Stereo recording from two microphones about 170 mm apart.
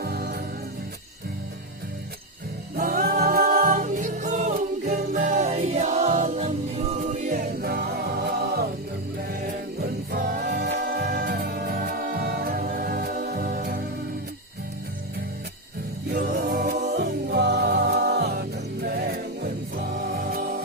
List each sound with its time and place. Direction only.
0.0 s music: 70° right (ahead or behind)
2.7 s music: 60° right (ahead or behind)
9.8 s music: 60° right (ahead or behind)
16.3 s a capella: 70° right (ahead or behind)
17.0 s music: 75° right (ahead or behind)